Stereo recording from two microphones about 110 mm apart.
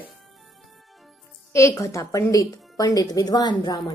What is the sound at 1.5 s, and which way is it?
A woman's voice, 25° left (ahead or behind).